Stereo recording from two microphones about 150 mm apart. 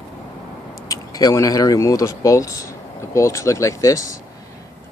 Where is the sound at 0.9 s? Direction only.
25° left (ahead or behind).